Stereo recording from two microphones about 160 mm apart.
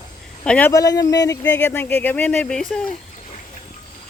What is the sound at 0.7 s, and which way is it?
Speech, 20° left (ahead or behind).